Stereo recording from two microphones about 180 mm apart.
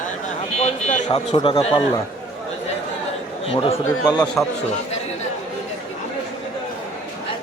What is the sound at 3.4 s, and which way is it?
Speech, 30° left (ahead or behind).